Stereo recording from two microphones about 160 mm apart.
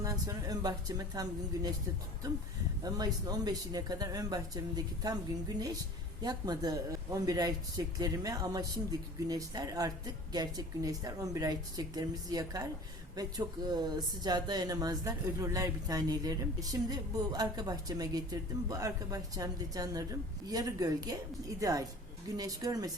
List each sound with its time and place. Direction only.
0.0 s speech: 20° right (ahead or behind)
2.8 s speech: 25° right (ahead or behind)